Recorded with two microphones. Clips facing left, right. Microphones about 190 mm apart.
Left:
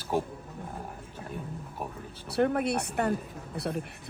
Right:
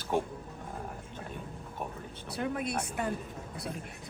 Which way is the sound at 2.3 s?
60° left (ahead or behind).